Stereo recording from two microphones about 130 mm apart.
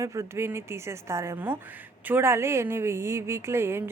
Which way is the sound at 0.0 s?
25° right (ahead or behind).